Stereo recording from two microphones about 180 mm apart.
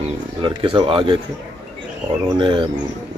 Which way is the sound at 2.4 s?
25° right (ahead or behind).